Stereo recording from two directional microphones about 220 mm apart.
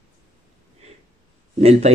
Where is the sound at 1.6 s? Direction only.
30° right (ahead or behind).